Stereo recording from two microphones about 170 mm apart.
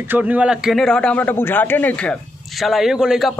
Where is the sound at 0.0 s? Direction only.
10° right (ahead or behind).